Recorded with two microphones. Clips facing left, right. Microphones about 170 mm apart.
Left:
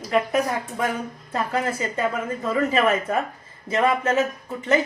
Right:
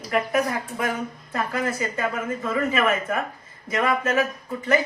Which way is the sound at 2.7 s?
35° left (ahead or behind).